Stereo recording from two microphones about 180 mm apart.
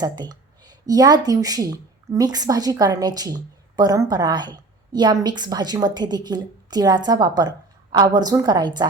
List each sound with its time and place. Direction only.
0.0 s speech: 20° right (ahead or behind)